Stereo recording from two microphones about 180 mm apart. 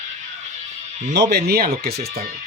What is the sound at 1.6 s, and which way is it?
Speech, 35° right (ahead or behind).